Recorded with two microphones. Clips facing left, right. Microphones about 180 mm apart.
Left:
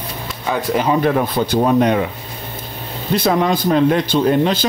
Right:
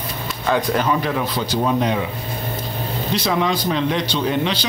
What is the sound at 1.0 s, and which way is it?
Speech, 50° left (ahead or behind).